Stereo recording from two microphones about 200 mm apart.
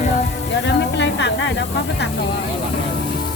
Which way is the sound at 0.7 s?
60° left (ahead or behind).